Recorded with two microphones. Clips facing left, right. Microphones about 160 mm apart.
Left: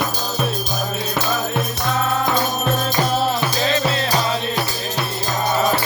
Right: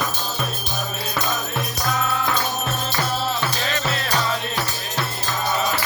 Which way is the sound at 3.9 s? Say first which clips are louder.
Left 4 dB; 30° left (ahead or behind).